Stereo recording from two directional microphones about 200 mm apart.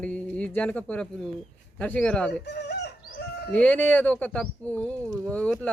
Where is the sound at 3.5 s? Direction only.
10° left (ahead or behind).